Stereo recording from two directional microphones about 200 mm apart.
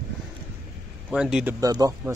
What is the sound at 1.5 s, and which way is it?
Speech, 20° right (ahead or behind).